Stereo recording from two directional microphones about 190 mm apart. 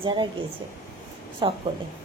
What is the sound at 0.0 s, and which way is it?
Speech, 25° right (ahead or behind).